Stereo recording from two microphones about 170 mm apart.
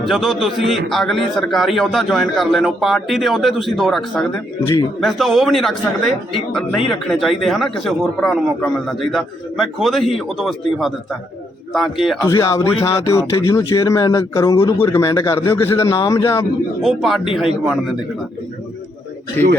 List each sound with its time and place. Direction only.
0.0 s a man's voice: centre (ahead or behind)
12.2 s speech: 20° left (ahead or behind)
16.8 s a man's voice: centre (ahead or behind)